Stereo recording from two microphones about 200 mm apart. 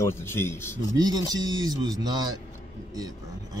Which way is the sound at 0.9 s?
20° right (ahead or behind).